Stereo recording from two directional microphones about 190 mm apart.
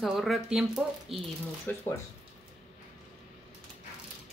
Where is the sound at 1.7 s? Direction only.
10° left (ahead or behind).